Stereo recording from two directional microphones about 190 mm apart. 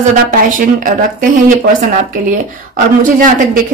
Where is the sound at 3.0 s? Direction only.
45° right (ahead or behind).